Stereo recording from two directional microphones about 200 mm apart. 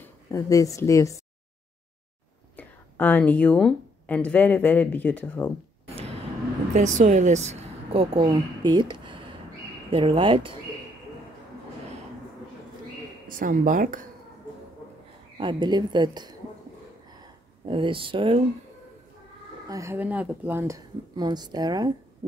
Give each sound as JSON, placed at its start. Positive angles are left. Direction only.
{"t": 0.0, "sound": "a woman's voice", "side_deg": 15}
{"t": 2.5, "sound": "speech", "side_deg": 10}
{"t": 6.7, "sound": "a woman's voice", "side_deg": -35}
{"t": 13.4, "sound": "speech", "side_deg": -45}
{"t": 15.3, "sound": "a woman's voice", "side_deg": -25}
{"t": 17.6, "sound": "a woman's voice", "side_deg": -25}
{"t": 19.7, "sound": "a woman's voice", "side_deg": -15}